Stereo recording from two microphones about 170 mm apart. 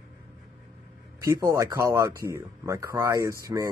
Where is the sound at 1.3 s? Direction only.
15° right (ahead or behind).